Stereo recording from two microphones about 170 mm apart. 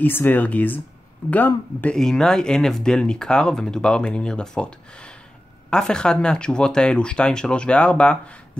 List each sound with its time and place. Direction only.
0.0 s speech: 10° left (ahead or behind)